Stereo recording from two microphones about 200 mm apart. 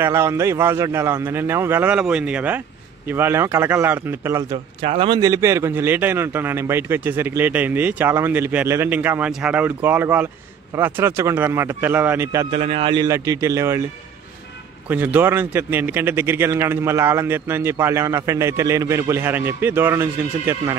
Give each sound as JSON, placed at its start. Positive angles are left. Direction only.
{"t": 0.0, "sound": "speech", "side_deg": -15}
{"t": 4.8, "sound": "speech", "side_deg": -30}
{"t": 12.4, "sound": "speech", "side_deg": -30}
{"t": 14.9, "sound": "speech", "side_deg": -10}